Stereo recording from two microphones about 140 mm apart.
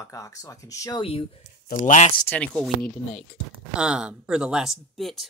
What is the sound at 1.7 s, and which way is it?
Speech, 65° left (ahead or behind).